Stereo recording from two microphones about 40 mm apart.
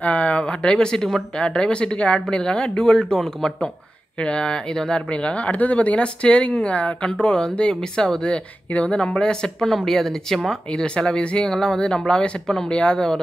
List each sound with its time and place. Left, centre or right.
0.0 s speech: left
0.7 s speech: centre
1.4 s speech: left
4.2 s speech: left
5.1 s speech: left
9.7 s speech: centre
10.8 s speech: centre